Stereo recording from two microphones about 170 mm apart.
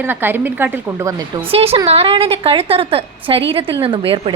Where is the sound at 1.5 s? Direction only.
35° right (ahead or behind).